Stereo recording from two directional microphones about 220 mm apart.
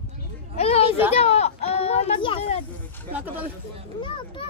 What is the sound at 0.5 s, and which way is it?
A child's voice, 30° left (ahead or behind).